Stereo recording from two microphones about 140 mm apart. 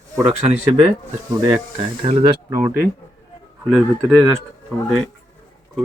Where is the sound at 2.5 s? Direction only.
20° right (ahead or behind).